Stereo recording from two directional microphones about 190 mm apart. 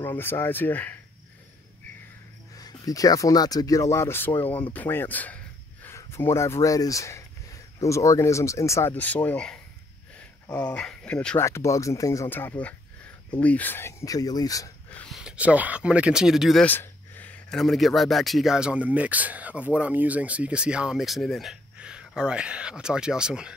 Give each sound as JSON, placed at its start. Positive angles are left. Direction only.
{"t": 0.2, "sound": "speech", "side_deg": 10}
{"t": 2.5, "sound": "speech", "side_deg": 20}
{"t": 14.9, "sound": "speech", "side_deg": 5}